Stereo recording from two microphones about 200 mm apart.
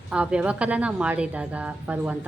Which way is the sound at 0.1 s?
5° right (ahead or behind).